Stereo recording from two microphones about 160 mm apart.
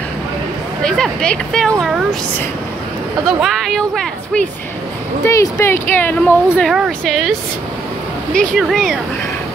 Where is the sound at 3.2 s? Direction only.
Centre (ahead or behind).